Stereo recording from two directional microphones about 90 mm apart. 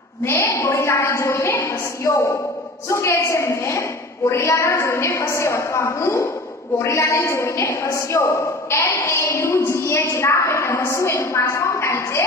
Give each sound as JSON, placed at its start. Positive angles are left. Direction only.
{"t": 0.2, "sound": "a woman's voice", "side_deg": 30}